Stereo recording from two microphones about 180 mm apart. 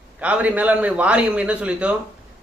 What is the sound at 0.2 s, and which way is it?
A man's voice, 10° right (ahead or behind).